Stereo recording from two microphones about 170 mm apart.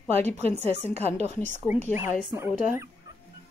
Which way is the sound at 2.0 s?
15° right (ahead or behind).